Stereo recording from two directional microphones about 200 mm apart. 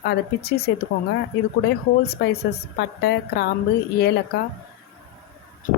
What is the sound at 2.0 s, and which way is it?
A woman's voice, 55° left (ahead or behind).